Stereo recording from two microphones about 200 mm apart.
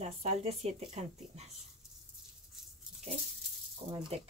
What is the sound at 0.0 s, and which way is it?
Speech, 35° right (ahead or behind).